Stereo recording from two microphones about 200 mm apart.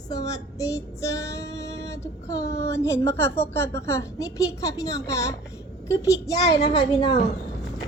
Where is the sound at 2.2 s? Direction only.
15° left (ahead or behind).